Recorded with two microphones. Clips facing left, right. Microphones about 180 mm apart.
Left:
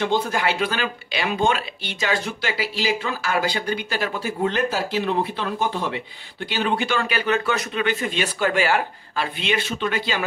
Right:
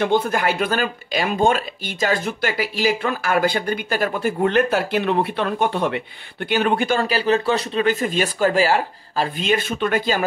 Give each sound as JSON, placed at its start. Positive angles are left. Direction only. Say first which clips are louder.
{"t": 0.0, "sound": "speech", "louder": "right 3 dB", "side_deg": -50}